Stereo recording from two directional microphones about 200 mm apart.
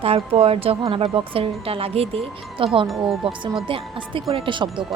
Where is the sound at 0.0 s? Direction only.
30° right (ahead or behind).